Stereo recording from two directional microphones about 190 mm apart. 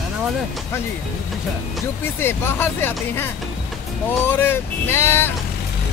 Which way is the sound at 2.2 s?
10° left (ahead or behind).